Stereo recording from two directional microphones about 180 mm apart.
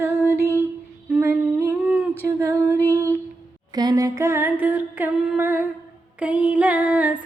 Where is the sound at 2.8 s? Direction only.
10° left (ahead or behind).